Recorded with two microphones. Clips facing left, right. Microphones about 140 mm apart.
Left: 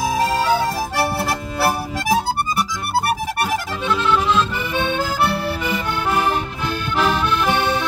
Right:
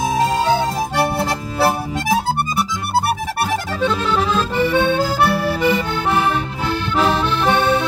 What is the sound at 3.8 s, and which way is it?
Accordion, 35° right (ahead or behind).